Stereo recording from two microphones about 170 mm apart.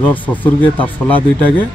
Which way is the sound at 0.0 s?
10° left (ahead or behind).